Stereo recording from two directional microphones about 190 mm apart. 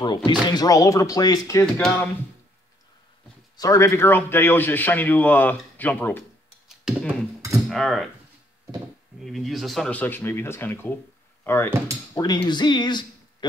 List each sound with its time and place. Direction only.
0.0 s a man's voice: 25° left (ahead or behind)
3.5 s a man's voice: 15° left (ahead or behind)
6.8 s beatboxing: centre (ahead or behind)
7.7 s speech: centre (ahead or behind)
9.2 s a man's voice: centre (ahead or behind); by 13.5 s 25° left (ahead or behind)